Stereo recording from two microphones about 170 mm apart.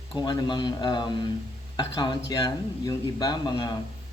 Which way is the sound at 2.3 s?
20° left (ahead or behind).